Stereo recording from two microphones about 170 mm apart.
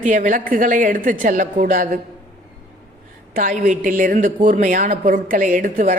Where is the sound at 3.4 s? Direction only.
55° right (ahead or behind).